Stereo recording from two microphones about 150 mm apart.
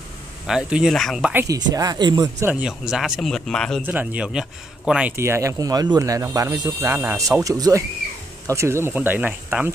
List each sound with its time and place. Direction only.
0.5 s speech: 5° right (ahead or behind)
1.5 s speech: 25° right (ahead or behind)
2.4 s speech: 10° right (ahead or behind)
3.8 s a man's voice: 10° right (ahead or behind)
5.1 s a man's voice: 15° right (ahead or behind)